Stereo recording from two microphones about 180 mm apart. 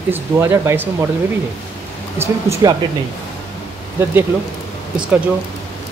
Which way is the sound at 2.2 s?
20° right (ahead or behind).